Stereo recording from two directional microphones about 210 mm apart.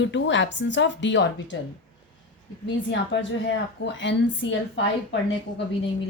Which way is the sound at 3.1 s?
55° left (ahead or behind).